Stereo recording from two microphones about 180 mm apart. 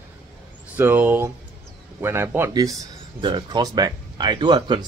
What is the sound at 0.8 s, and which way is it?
Speech, 10° right (ahead or behind).